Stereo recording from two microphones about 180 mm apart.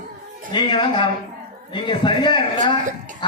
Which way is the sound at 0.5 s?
25° left (ahead or behind).